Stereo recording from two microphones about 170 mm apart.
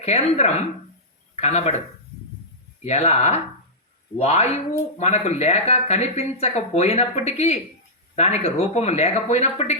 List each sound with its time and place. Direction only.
0.0 s speech: 40° left (ahead or behind)
2.8 s speech: 40° left (ahead or behind)